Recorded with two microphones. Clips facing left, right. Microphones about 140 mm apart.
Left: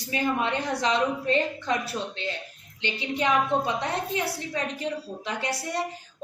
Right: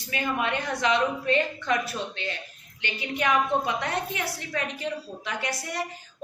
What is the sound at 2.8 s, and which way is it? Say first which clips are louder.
A woman's voice: left 1 dB; 25° left (ahead or behind).